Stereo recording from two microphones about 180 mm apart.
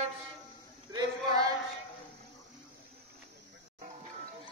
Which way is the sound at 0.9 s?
20° right (ahead or behind).